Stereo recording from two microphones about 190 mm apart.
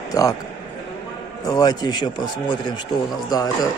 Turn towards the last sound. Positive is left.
turn(degrees=20)  # may be behind; listen again after turning